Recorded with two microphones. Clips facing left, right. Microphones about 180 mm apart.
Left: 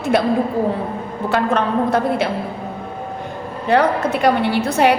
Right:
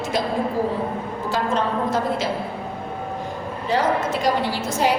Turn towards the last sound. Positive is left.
turn(degrees=65)  # may be behind; listen again after turning